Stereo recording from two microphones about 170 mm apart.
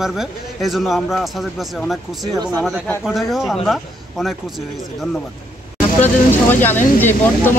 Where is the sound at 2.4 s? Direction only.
20° right (ahead or behind).